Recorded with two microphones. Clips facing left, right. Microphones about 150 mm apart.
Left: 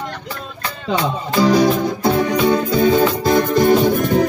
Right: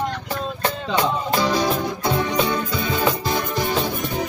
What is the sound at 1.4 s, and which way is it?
Music, 45° left (ahead or behind).